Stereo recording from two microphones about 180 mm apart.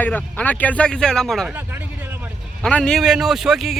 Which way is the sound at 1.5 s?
10° right (ahead or behind).